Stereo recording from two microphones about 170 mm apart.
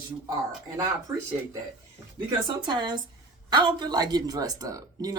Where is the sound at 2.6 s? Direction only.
25° right (ahead or behind).